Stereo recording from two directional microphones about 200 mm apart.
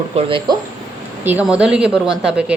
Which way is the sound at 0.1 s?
25° right (ahead or behind).